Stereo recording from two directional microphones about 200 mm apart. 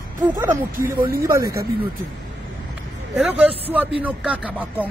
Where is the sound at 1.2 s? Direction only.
15° right (ahead or behind).